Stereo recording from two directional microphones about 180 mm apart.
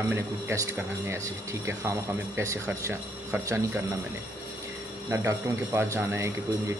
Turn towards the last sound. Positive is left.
turn(degrees=-15)  # may be behind; listen again after turning